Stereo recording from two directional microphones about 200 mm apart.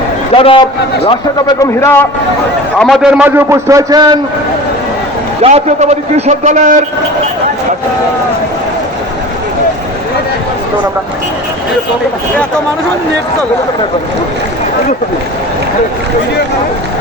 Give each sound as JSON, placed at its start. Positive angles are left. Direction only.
{"t": 0.3, "sound": "a man's voice", "side_deg": 25}
{"t": 1.8, "sound": "a man's voice", "side_deg": 10}
{"t": 5.4, "sound": "a man's voice", "side_deg": -30}